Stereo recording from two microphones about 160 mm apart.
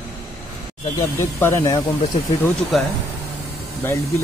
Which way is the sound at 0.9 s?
15° left (ahead or behind).